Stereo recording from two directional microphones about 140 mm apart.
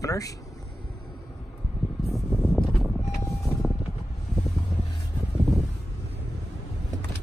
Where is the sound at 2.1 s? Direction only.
Centre (ahead or behind).